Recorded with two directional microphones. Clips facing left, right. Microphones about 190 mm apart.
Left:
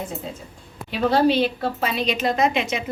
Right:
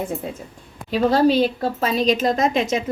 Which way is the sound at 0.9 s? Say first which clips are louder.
Right 2 dB; 40° right (ahead or behind).